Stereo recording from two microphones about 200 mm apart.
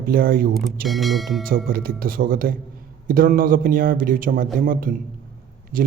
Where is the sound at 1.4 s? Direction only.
45° right (ahead or behind).